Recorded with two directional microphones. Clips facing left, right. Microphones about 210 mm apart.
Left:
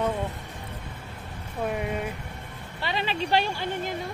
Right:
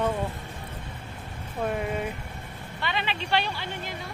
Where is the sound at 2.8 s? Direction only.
35° left (ahead or behind).